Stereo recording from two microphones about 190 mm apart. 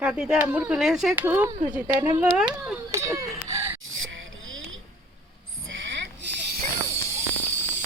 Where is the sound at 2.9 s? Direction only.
15° right (ahead or behind).